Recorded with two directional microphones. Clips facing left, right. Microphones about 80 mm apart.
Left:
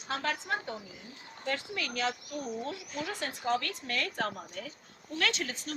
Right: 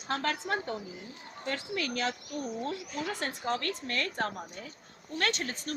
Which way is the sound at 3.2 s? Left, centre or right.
Right.